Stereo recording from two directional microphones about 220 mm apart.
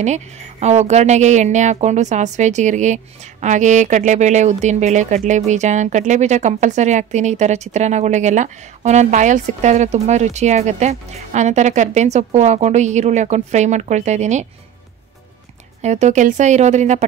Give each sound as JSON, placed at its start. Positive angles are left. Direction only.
{"t": 0.0, "sound": "speech", "side_deg": -30}
{"t": 15.8, "sound": "speech", "side_deg": -30}